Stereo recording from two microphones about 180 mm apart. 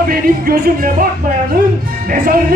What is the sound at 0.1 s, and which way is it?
Speech, 55° right (ahead or behind).